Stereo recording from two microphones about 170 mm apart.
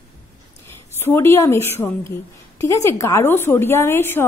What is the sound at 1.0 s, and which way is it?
A woman's voice, 15° left (ahead or behind).